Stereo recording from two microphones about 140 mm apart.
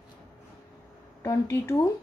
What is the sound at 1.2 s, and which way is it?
Speech, 20° left (ahead or behind).